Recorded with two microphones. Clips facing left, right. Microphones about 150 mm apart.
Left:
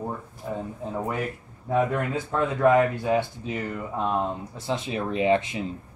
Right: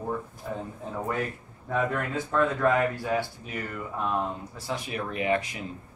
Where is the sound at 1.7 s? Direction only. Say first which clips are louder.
Left 4 dB; 20° left (ahead or behind).